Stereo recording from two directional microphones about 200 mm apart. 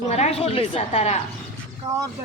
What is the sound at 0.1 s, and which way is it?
Speech, 30° left (ahead or behind).